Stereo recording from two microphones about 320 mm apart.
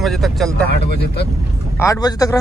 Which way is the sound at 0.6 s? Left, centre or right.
Left.